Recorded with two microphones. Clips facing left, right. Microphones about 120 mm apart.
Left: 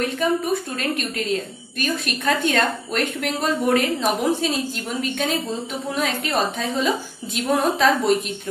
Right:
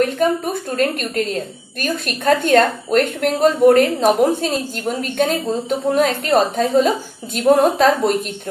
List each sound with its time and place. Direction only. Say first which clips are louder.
0.0 s a woman's voice: right 5 dB; 45° right (ahead or behind)